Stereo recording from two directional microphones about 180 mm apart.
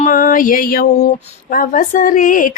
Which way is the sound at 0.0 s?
50° left (ahead or behind).